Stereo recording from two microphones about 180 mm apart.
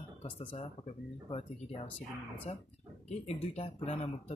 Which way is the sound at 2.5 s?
35° left (ahead or behind).